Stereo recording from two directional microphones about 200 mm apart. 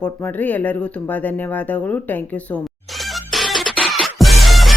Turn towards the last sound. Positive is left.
turn(degrees=0)  # may be behind; listen again after turning